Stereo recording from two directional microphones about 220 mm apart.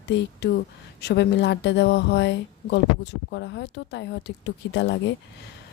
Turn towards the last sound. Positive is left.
turn(degrees=55)  # may be behind; listen again after turning